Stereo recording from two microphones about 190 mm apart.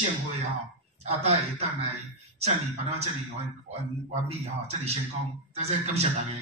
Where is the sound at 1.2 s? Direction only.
35° right (ahead or behind).